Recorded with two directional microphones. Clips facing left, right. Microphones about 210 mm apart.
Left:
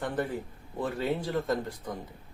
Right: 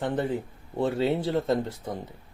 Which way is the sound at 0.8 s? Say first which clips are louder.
Right 5 dB; 25° right (ahead or behind).